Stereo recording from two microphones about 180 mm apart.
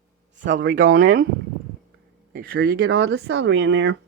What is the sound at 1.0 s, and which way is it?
Speech, 90° right.